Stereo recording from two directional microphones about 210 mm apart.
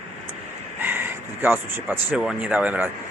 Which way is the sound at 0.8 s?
10° right (ahead or behind).